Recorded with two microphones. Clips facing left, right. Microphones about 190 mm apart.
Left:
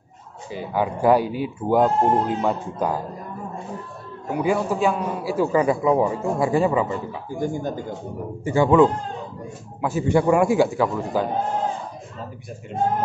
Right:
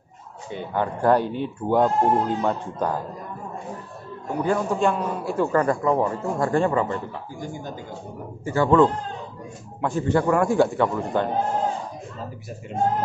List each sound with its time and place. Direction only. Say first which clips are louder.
0.5 s a man's voice: left 2 dB; 5° left (ahead or behind)
4.3 s a man's voice: left 1 dB; 10° left (ahead or behind)
7.3 s speech: left 10 dB; 50° left (ahead or behind)
8.5 s a man's voice: left 2 dB; 15° left (ahead or behind)